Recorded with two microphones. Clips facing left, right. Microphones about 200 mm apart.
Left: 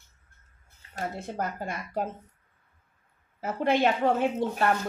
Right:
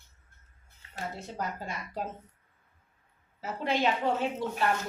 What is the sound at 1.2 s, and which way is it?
Speech, 50° left (ahead or behind).